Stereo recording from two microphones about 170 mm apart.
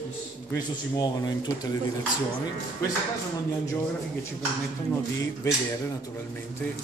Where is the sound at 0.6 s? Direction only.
25° left (ahead or behind).